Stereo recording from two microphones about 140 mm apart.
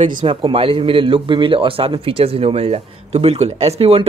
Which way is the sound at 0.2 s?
35° right (ahead or behind).